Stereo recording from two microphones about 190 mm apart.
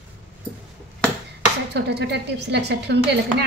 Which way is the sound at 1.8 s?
60° right (ahead or behind).